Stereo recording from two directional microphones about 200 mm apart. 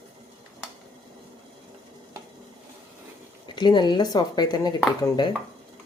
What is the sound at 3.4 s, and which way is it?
Speech, 20° left (ahead or behind).